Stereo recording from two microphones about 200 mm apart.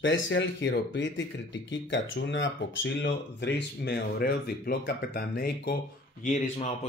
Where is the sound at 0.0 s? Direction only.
65° left (ahead or behind); by 5.8 s 50° left (ahead or behind).